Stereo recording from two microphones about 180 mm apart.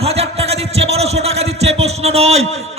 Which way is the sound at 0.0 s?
35° right (ahead or behind).